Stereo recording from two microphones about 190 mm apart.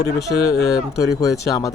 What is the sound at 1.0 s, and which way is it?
Speech, 15° left (ahead or behind).